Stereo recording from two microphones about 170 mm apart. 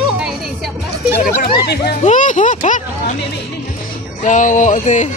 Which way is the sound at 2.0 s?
50° left (ahead or behind).